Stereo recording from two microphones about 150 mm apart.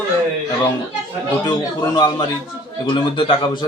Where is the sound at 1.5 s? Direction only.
25° left (ahead or behind).